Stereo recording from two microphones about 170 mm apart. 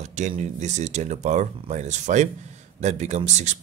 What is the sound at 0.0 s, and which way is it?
A man's voice, 45° right (ahead or behind).